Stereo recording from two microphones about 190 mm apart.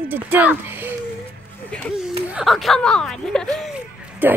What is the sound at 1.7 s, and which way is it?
Speech, 5° left (ahead or behind).